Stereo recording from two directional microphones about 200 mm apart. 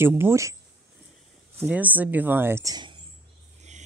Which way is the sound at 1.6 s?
10° right (ahead or behind).